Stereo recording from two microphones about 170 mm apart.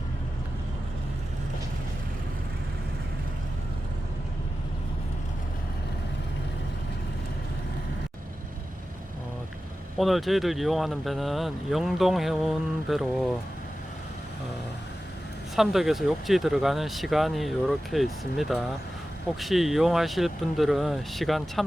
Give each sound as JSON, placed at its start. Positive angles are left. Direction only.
{"t": 10.0, "sound": "speech", "side_deg": 0}
{"t": 15.5, "sound": "speech", "side_deg": 0}